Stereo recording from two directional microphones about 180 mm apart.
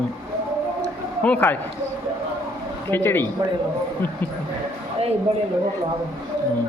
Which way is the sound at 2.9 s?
10° left (ahead or behind).